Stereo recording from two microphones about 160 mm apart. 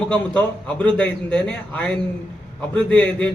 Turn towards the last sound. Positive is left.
turn(degrees=5)  # may be behind; listen again after turning